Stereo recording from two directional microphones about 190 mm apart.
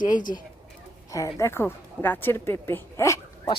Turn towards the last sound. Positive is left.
turn(degrees=15)  # may be behind; listen again after turning